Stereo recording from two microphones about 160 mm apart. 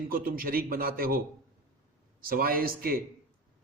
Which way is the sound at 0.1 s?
65° right (ahead or behind).